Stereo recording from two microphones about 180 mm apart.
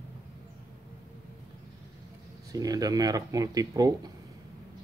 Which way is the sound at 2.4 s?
20° right (ahead or behind).